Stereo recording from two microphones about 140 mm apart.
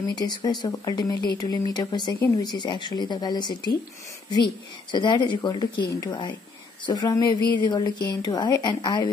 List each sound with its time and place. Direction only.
0.1 s speech: 30° left (ahead or behind)
2.1 s speech: 20° left (ahead or behind)
2.4 s speech: 35° left (ahead or behind)
4.9 s speech: 35° left (ahead or behind)